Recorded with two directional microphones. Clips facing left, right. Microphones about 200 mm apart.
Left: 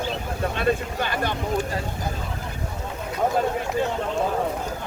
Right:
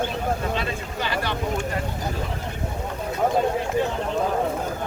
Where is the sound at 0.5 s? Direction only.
50° left (ahead or behind).